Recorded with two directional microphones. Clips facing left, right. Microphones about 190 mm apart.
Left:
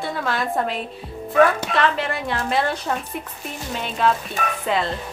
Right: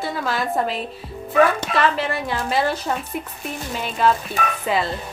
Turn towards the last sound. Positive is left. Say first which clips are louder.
# right 1 dB
turn(degrees=-5)  # may be behind; listen again after turning